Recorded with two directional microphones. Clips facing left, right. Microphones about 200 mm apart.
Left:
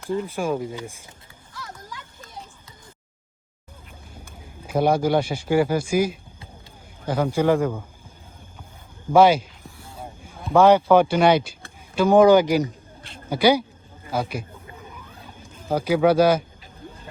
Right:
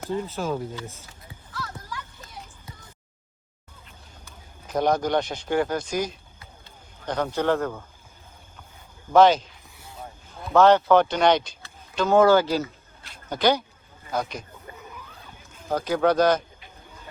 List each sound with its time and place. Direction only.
0.3 s speech: 10° left (ahead or behind)
1.5 s music: 20° left (ahead or behind)
4.6 s speech: 10° left (ahead or behind)
9.1 s speech: 10° left (ahead or behind)
10.0 s a sound: 10° left (ahead or behind)
10.5 s speech: 10° left (ahead or behind)
15.7 s speech: 10° left (ahead or behind)